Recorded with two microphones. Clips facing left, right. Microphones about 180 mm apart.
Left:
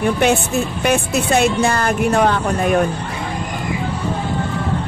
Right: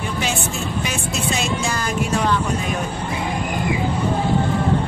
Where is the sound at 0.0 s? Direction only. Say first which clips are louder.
Left 8 dB; 60° left (ahead or behind).